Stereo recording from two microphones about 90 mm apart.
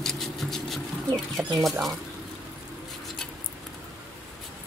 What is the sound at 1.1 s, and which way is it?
Speech, centre (ahead or behind).